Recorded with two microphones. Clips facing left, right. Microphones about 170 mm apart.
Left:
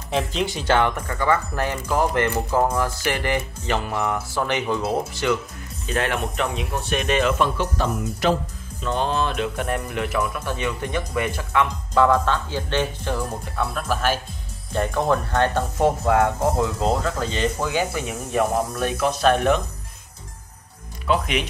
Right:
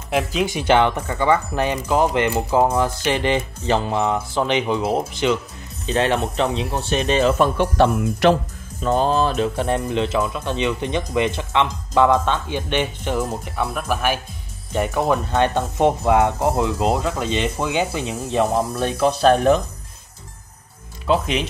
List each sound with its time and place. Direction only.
0.1 s speech: 5° right (ahead or behind); by 7.5 s 40° right (ahead or behind)
7.5 s speech: 65° right (ahead or behind)
8.8 s speech: 40° right (ahead or behind)
21.1 s speech: 30° right (ahead or behind)